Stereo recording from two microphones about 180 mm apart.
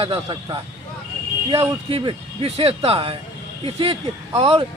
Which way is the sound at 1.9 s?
30° right (ahead or behind).